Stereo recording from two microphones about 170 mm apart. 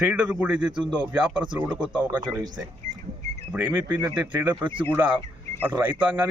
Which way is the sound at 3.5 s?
10° right (ahead or behind).